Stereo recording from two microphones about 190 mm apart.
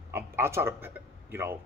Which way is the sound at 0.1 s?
15° right (ahead or behind).